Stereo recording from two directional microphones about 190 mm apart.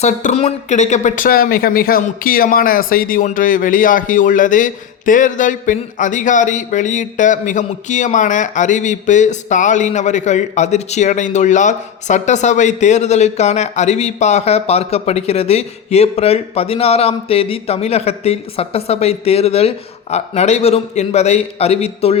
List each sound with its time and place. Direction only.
0.0 s speech: 35° left (ahead or behind)